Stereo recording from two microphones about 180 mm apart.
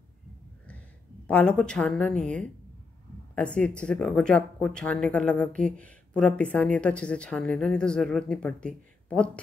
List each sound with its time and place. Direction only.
1.2 s speech: 5° left (ahead or behind)